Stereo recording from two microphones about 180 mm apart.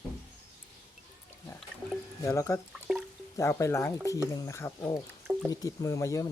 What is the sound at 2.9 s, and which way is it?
Music, 5° right (ahead or behind).